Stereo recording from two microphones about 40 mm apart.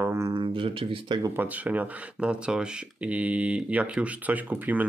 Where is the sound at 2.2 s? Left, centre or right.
Right.